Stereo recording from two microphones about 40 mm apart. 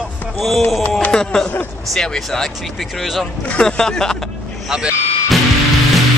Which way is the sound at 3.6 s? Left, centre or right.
Centre.